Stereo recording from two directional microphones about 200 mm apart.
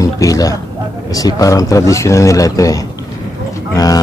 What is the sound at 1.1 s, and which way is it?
A man's voice, 15° left (ahead or behind).